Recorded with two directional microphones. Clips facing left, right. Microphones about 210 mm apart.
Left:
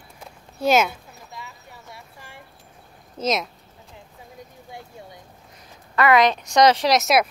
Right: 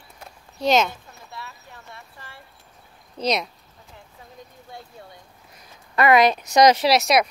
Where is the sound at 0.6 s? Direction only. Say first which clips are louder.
Left 1 dB; 5° left (ahead or behind).